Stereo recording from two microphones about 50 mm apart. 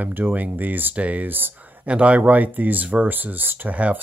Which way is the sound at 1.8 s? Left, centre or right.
Right.